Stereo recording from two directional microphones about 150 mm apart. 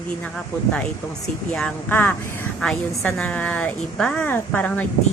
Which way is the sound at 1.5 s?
10° left (ahead or behind).